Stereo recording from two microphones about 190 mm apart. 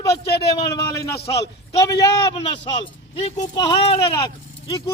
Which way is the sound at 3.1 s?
25° left (ahead or behind).